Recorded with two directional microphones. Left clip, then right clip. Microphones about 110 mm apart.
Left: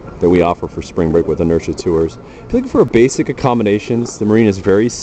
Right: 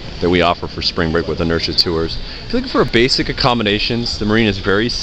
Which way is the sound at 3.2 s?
40° left (ahead or behind).